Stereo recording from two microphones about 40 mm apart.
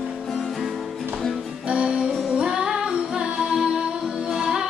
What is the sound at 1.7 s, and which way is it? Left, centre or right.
Music, right.